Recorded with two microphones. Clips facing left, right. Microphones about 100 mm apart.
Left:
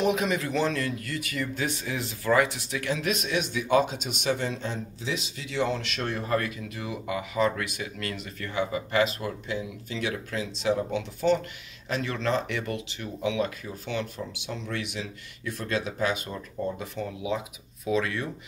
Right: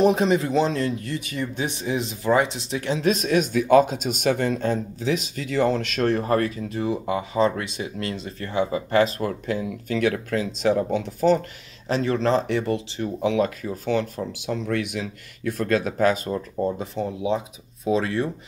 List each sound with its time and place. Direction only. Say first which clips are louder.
0.0 s speech: right 7 dB; 30° right (ahead or behind)